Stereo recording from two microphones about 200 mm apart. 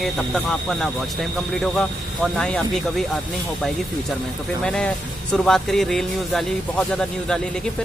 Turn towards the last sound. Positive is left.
turn(degrees=0)  # may be behind; listen again after turning